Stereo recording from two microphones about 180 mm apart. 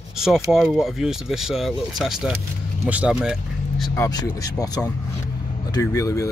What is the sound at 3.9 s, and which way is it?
Speech, 20° left (ahead or behind).